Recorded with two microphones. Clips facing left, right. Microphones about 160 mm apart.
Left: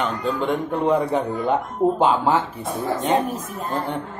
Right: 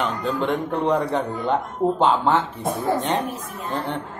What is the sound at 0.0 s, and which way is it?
A man's voice, centre (ahead or behind).